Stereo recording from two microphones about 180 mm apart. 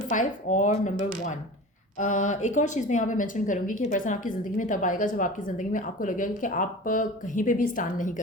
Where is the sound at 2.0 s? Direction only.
45° left (ahead or behind).